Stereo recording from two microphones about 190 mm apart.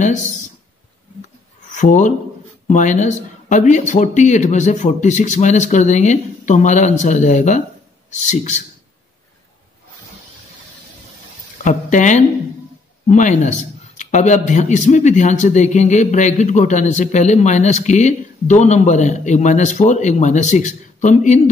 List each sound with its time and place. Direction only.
1.8 s a man's voice: 40° left (ahead or behind)
11.5 s a man's voice: 40° left (ahead or behind)